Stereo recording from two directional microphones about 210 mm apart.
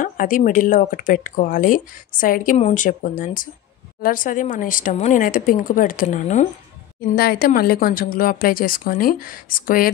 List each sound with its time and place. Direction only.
0.0 s speech: 40° left (ahead or behind)
7.2 s speech: 45° left (ahead or behind)